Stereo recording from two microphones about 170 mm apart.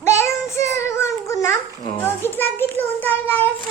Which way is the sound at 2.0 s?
15° left (ahead or behind).